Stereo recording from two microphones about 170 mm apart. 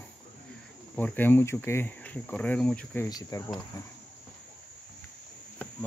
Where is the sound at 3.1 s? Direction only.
20° left (ahead or behind).